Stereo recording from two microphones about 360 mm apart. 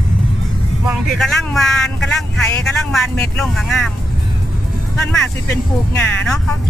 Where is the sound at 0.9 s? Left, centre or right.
Centre.